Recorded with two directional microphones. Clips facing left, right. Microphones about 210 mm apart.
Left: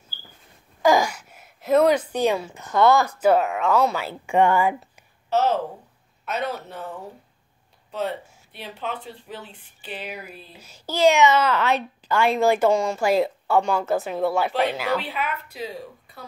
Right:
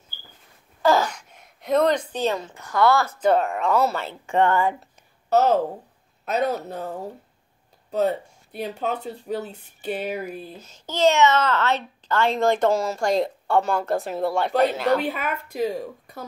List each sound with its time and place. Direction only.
0.8 s a sound: 10° left (ahead or behind)
2.6 s speech: 20° left (ahead or behind); by 4.0 s centre (ahead or behind)
4.0 s speech: 10° left (ahead or behind)
5.3 s speech: 40° right (ahead or behind)
10.6 s speech: 10° left (ahead or behind)
14.5 s a woman's voice: 45° right (ahead or behind)